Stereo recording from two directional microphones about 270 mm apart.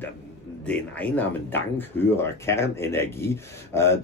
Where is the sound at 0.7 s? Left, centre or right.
Centre.